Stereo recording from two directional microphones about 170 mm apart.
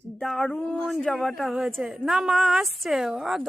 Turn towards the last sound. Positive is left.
turn(degrees=0)  # may be behind; listen again after turning